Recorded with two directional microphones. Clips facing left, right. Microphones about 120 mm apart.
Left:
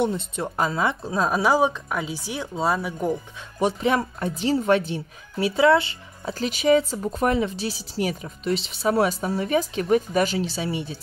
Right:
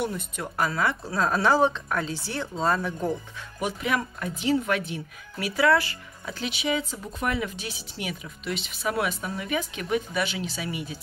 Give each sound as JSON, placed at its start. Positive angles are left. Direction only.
{"t": 0.0, "sound": "a woman's voice", "side_deg": 25}
{"t": 3.5, "sound": "a woman's voice", "side_deg": 30}
{"t": 6.3, "sound": "speech", "side_deg": 40}